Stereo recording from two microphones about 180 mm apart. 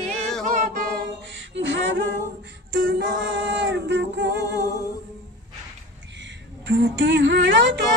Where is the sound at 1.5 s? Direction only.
90° right.